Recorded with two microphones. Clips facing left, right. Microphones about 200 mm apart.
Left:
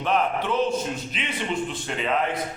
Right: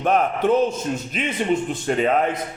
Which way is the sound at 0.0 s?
45° right (ahead or behind).